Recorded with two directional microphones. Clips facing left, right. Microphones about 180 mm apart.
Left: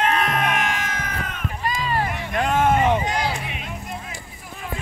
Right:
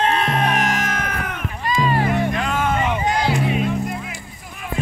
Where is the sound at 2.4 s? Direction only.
50° left (ahead or behind).